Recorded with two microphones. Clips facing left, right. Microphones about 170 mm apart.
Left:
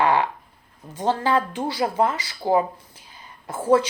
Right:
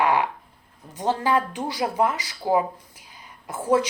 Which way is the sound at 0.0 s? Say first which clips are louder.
Left 1 dB; 10° right (ahead or behind).